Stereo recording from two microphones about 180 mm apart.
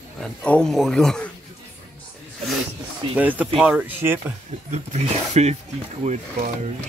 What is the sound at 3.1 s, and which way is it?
Speech, 10° right (ahead or behind).